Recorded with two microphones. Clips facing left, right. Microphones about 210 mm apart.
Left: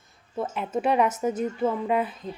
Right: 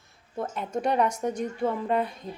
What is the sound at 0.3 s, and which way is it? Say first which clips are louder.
Speech: left 2 dB; 5° left (ahead or behind).